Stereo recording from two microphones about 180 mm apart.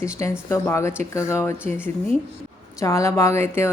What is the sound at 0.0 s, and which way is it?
A woman's voice, 15° left (ahead or behind).